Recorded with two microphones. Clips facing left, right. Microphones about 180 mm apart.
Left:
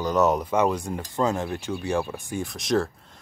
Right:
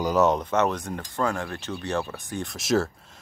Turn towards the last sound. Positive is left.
turn(degrees=-5)  # may be behind; listen again after turning